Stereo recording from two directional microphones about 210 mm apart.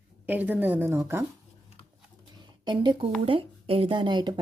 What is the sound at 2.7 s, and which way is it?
Speech, 20° right (ahead or behind).